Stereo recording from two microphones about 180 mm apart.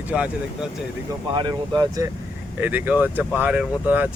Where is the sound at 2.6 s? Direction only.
10° right (ahead or behind).